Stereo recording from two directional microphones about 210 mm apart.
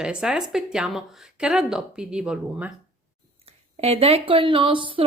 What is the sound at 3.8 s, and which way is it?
A woman's voice, 30° right (ahead or behind).